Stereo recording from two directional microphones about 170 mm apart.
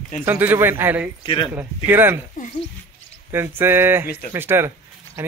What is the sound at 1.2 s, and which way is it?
Speech, 30° left (ahead or behind).